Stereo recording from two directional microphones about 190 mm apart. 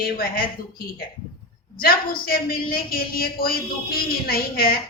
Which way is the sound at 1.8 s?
50° left (ahead or behind).